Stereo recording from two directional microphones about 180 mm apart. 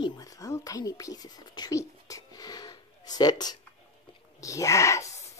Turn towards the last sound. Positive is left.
turn(degrees=15)  # may be behind; listen again after turning